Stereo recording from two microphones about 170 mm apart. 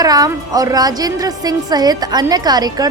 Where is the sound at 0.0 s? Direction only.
20° right (ahead or behind).